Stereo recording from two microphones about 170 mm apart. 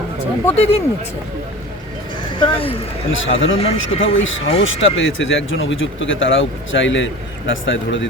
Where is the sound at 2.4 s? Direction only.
30° left (ahead or behind).